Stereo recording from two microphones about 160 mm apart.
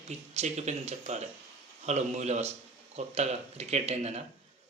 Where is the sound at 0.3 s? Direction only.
45° right (ahead or behind).